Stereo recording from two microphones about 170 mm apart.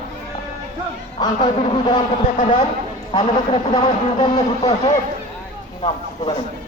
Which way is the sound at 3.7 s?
25° left (ahead or behind).